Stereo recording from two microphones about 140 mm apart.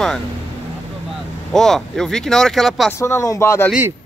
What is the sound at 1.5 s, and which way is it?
Speech, 5° left (ahead or behind).